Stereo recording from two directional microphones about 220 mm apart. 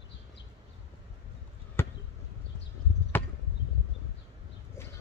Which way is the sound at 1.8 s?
10° left (ahead or behind).